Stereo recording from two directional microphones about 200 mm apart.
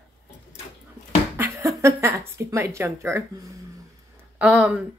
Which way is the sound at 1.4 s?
15° right (ahead or behind).